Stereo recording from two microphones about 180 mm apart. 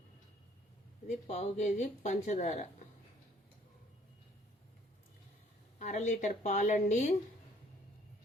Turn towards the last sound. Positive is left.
turn(degrees=40)  # may be behind; listen again after turning